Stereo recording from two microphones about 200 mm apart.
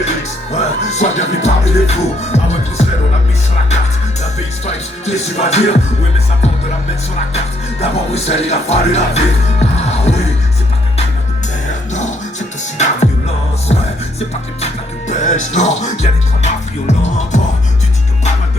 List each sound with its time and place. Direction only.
0.0 s music: 35° left (ahead or behind)
4.6 s music: 35° left (ahead or behind)
7.3 s speech: 30° left (ahead or behind)
12.7 s music: 35° left (ahead or behind)